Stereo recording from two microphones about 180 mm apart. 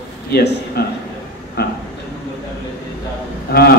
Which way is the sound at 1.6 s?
65° left (ahead or behind).